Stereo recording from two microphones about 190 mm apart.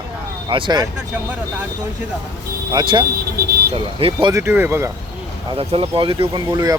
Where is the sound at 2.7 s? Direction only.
25° right (ahead or behind).